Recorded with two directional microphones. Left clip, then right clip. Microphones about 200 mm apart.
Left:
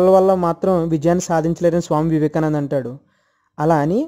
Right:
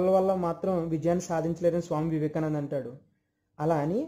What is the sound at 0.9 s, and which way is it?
Speech, 45° left (ahead or behind).